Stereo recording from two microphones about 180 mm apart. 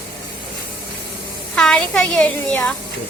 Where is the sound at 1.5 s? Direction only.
5° left (ahead or behind).